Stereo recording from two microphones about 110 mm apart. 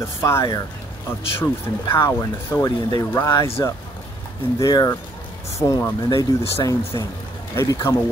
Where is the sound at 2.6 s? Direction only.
35° left (ahead or behind).